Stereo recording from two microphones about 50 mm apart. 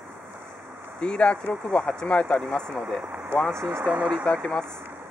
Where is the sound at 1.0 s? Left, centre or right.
Centre.